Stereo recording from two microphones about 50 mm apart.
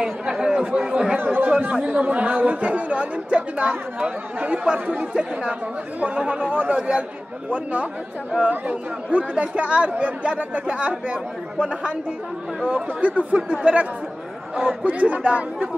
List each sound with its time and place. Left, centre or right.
0.0 s chatter: centre
0.7 s speech: centre
1.1 s speech: right
1.7 s speech: right
13.5 s speech: centre